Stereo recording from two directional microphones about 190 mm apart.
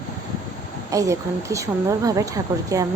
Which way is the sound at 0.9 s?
15° right (ahead or behind).